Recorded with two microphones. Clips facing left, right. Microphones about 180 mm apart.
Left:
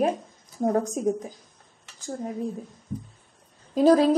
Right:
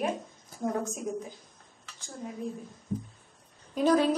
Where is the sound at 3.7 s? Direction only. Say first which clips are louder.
Left 6 dB; 35° left (ahead or behind).